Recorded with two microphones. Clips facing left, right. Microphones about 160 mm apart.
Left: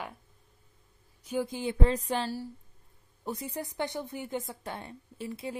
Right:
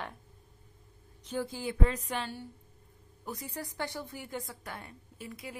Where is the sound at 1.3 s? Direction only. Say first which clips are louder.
Left 3 dB; 15° left (ahead or behind).